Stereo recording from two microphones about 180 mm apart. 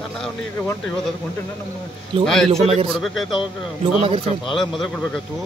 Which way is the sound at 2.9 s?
Centre (ahead or behind).